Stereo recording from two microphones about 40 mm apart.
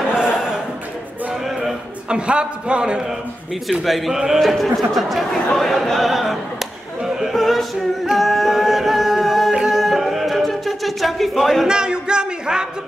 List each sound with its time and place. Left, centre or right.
0.1 s a sound: centre
2.0 s a man's voice: right
3.6 s speech: centre
5.9 s speech: centre
7.2 s a capella: centre
11.6 s music: centre